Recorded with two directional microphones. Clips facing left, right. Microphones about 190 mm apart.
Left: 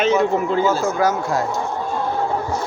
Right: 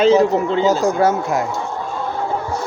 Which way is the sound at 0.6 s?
15° right (ahead or behind).